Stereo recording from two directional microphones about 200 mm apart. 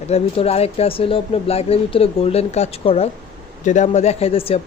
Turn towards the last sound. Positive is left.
turn(degrees=30)  # may be behind; listen again after turning